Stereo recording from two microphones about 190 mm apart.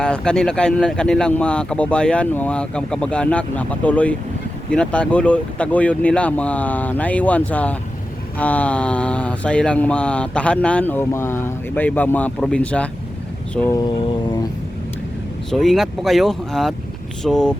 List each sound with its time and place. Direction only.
0.0 s speech: 5° left (ahead or behind)
13.7 s a sound: 25° left (ahead or behind)
15.4 s speech: centre (ahead or behind)